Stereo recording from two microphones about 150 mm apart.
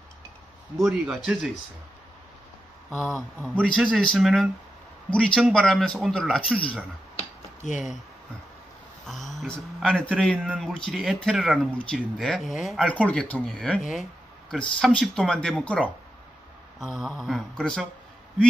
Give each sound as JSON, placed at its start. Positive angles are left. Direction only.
{"t": 0.7, "sound": "speech", "side_deg": 0}
{"t": 3.0, "sound": "speech", "side_deg": 0}
{"t": 7.2, "sound": "a sound", "side_deg": 55}
{"t": 9.0, "sound": "speech", "side_deg": 0}
{"t": 16.8, "sound": "speech", "side_deg": 0}